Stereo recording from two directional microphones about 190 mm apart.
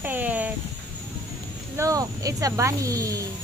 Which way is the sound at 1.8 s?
15° right (ahead or behind).